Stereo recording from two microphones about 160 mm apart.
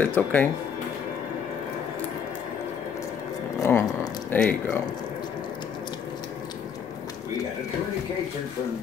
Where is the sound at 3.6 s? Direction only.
15° left (ahead or behind).